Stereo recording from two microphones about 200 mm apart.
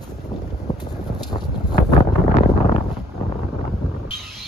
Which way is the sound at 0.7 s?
20° left (ahead or behind).